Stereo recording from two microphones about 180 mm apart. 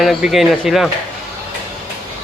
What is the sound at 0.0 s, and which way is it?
Speech, centre (ahead or behind).